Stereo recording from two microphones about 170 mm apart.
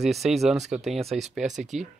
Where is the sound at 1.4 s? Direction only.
45° right (ahead or behind).